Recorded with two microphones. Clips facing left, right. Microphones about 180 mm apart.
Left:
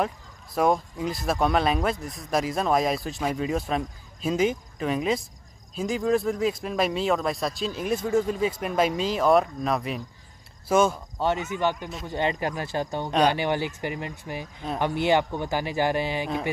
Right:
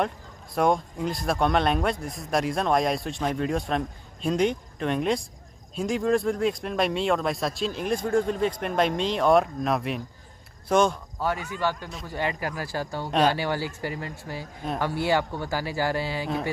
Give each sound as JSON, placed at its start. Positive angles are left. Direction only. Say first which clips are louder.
{"t": 0.6, "sound": "speech", "louder": "even", "side_deg": 0}
{"t": 11.1, "sound": "speech", "louder": "left 3 dB", "side_deg": 25}